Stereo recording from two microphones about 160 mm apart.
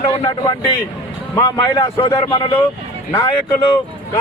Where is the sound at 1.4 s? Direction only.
20° left (ahead or behind).